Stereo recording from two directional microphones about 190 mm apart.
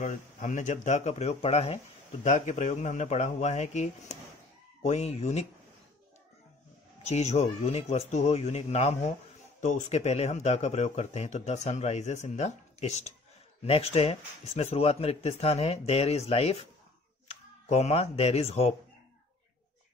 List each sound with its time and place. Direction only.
0.0 s speech: 40° left (ahead or behind)
7.0 s speech: 35° left (ahead or behind)
17.6 s speech: 35° left (ahead or behind)